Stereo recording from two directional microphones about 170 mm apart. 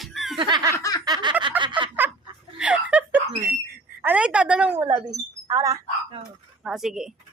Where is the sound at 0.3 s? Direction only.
25° right (ahead or behind).